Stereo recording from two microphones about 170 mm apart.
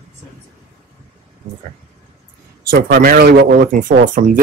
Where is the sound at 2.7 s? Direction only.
90° right.